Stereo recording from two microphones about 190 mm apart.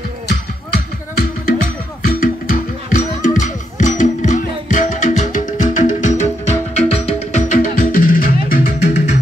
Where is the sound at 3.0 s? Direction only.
40° left (ahead or behind).